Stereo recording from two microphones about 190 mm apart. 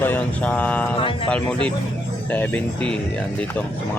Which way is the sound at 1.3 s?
5° left (ahead or behind).